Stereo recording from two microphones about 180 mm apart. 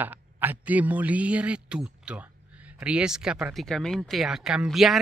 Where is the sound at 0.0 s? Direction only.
10° right (ahead or behind).